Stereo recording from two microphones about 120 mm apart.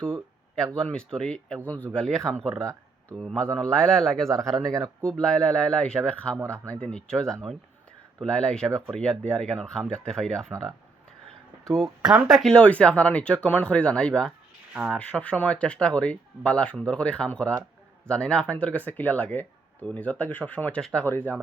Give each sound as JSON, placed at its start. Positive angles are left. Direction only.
{"t": 0.8, "sound": "speech", "side_deg": 5}
{"t": 2.5, "sound": "speech", "side_deg": -25}
{"t": 3.2, "sound": "speech", "side_deg": 5}
{"t": 4.4, "sound": "speech", "side_deg": -30}
{"t": 5.0, "sound": "speech", "side_deg": 5}
{"t": 12.0, "sound": "speech", "side_deg": -5}
{"t": 14.7, "sound": "speech", "side_deg": -10}
{"t": 14.9, "sound": "speech", "side_deg": 10}